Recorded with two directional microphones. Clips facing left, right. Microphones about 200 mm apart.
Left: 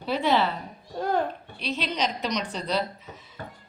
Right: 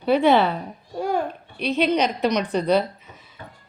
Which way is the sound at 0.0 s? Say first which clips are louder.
Right 7 dB; 60° right (ahead or behind).